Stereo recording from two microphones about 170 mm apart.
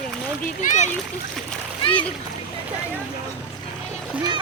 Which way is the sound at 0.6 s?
45° left (ahead or behind).